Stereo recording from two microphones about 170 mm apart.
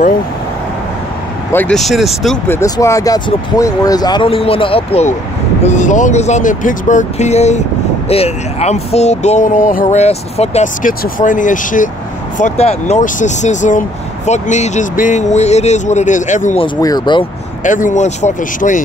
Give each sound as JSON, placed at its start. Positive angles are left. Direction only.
{"t": 1.5, "sound": "speech", "side_deg": 10}
{"t": 1.8, "sound": "speech", "side_deg": 0}
{"t": 2.4, "sound": "speech", "side_deg": 15}
{"t": 16.5, "sound": "speech", "side_deg": 25}
{"t": 17.6, "sound": "speech", "side_deg": 50}